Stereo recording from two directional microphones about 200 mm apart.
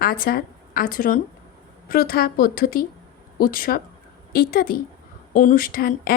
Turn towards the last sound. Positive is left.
turn(degrees=45)  # may be behind; listen again after turning